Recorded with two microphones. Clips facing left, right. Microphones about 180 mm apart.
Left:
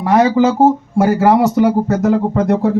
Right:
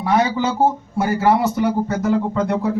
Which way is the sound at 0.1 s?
90° left.